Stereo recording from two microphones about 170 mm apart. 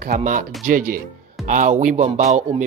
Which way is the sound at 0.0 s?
55° right (ahead or behind).